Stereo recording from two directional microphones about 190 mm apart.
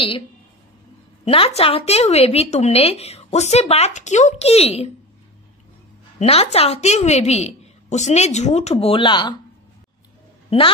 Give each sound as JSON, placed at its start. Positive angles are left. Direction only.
{"t": 1.2, "sound": "a woman's voice", "side_deg": 30}
{"t": 6.1, "sound": "a woman's voice", "side_deg": 35}